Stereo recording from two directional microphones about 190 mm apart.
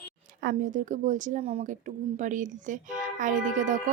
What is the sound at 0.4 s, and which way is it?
Speech, 40° right (ahead or behind).